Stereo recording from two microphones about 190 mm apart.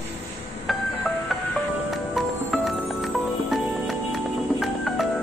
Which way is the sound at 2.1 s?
Centre (ahead or behind).